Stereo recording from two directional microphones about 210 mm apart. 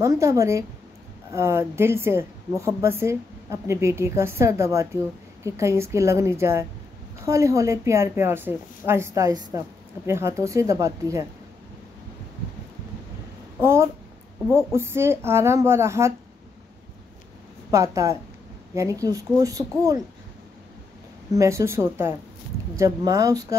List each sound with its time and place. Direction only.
0.0 s a woman's voice: 15° right (ahead or behind)
13.6 s a woman's voice: 10° right (ahead or behind)
17.6 s a woman's voice: 15° right (ahead or behind)
21.3 s a woman's voice: 15° right (ahead or behind)